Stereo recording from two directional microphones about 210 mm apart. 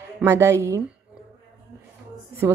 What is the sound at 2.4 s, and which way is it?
Speech, 10° right (ahead or behind).